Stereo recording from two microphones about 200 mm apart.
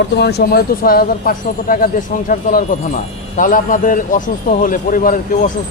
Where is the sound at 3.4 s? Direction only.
40° left (ahead or behind).